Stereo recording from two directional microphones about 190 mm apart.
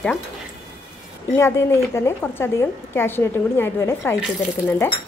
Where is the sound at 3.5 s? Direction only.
15° left (ahead or behind).